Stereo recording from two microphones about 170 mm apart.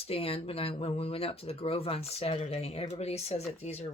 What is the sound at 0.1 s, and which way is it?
Speech, 35° left (ahead or behind).